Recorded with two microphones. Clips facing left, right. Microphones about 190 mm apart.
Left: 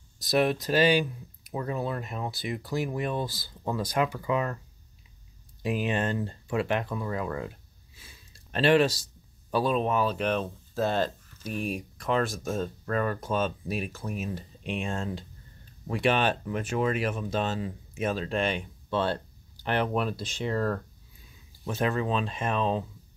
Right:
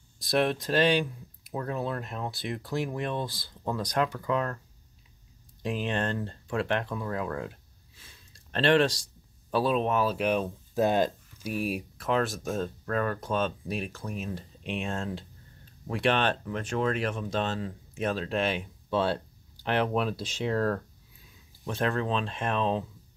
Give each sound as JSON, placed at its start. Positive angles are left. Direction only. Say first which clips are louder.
{"t": 0.2, "sound": "speech", "louder": "left 1 dB", "side_deg": 0}
{"t": 5.6, "sound": "speech", "louder": "left 2 dB", "side_deg": 5}